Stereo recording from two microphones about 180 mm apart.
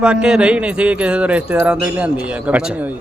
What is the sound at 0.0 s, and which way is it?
A man's voice, 5° right (ahead or behind).